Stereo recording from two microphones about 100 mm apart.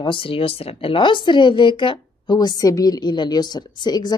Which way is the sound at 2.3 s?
40° left (ahead or behind).